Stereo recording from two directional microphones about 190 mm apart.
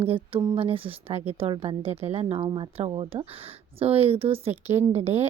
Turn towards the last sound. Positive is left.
turn(degrees=-35)  # may be behind; listen again after turning